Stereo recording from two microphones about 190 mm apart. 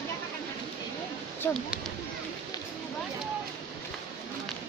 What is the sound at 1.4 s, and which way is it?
Speech, 10° left (ahead or behind).